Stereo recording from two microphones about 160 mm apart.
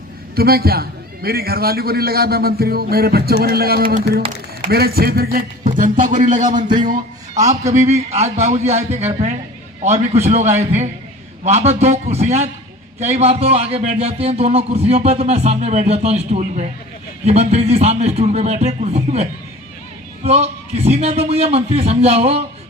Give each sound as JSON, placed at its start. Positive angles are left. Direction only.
{"t": 0.3, "sound": "a man's voice", "side_deg": -70}
{"t": 5.6, "sound": "a man's voice", "side_deg": -55}
{"t": 7.3, "sound": "a man's voice", "side_deg": -20}
{"t": 7.7, "sound": "a man's voice", "side_deg": -45}